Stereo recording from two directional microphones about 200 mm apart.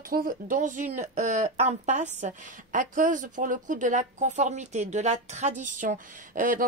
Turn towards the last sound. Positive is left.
turn(degrees=-45)  # may be behind; listen again after turning